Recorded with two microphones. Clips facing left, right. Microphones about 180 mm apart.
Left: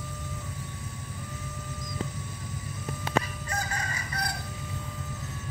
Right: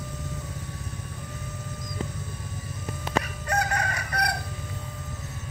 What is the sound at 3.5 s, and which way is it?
Chicken, 70° right (ahead or behind).